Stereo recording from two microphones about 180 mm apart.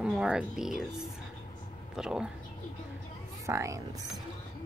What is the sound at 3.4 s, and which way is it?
Speech, 15° right (ahead or behind).